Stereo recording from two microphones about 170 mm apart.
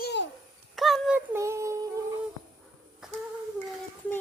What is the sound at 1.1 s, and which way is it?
Child singing, 15° right (ahead or behind).